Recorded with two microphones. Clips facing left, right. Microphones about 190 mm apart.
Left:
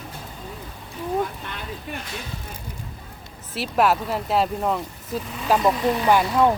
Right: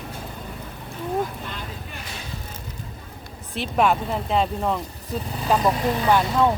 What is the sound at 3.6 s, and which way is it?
Speech, 5° left (ahead or behind).